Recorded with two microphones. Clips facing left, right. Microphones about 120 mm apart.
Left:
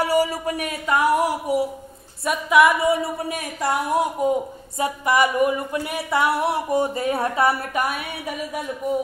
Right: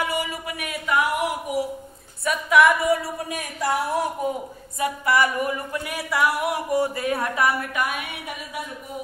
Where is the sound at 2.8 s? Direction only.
25° left (ahead or behind).